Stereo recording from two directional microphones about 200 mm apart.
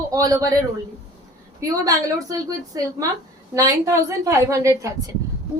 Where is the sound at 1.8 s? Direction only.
15° right (ahead or behind).